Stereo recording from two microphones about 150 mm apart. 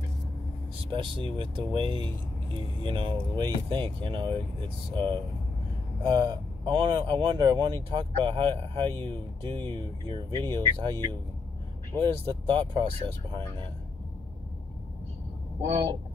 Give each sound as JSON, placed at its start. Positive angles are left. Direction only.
{"t": 0.9, "sound": "speech", "side_deg": -35}